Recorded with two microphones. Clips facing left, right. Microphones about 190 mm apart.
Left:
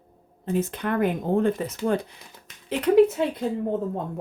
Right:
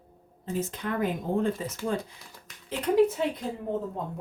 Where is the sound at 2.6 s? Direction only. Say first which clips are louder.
Left 6 dB; 75° left (ahead or behind).